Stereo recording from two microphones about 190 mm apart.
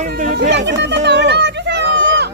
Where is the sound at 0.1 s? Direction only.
55° right (ahead or behind).